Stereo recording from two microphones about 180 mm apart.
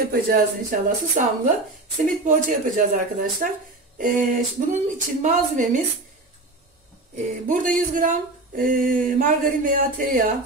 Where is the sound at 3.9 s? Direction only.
50° right (ahead or behind).